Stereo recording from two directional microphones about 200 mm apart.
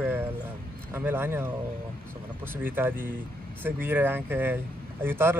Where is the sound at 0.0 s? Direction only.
10° right (ahead or behind).